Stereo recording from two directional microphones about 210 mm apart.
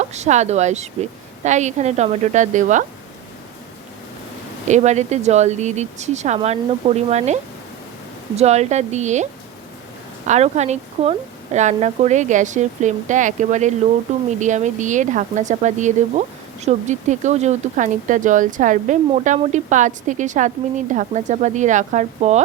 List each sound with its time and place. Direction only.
0.0 s speech: 35° right (ahead or behind)
4.7 s speech: 35° right (ahead or behind)
8.4 s speech: 30° right (ahead or behind)
10.2 s speech: 30° right (ahead or behind)